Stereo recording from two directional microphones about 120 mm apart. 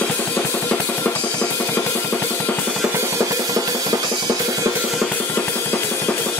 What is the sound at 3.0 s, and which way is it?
Drum, 25° right (ahead or behind).